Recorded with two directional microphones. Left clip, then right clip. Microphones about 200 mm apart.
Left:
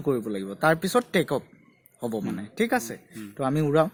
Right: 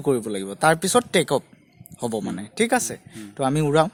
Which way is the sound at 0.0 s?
50° right (ahead or behind).